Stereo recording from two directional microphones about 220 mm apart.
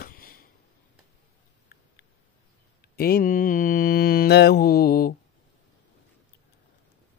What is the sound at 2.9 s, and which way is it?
Mantra, 45° left (ahead or behind).